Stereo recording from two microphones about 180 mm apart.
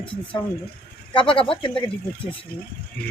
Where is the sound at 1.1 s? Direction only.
30° left (ahead or behind).